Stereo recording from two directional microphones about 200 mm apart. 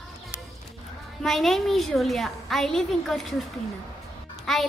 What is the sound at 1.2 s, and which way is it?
A woman's voice, centre (ahead or behind).